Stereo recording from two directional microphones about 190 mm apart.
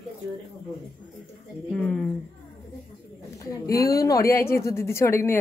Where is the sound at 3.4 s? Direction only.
15° left (ahead or behind).